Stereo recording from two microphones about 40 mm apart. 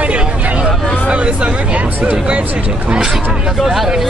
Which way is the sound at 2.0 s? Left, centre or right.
Right.